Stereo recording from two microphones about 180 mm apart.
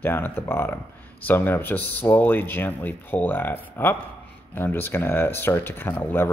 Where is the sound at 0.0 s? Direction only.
10° left (ahead or behind).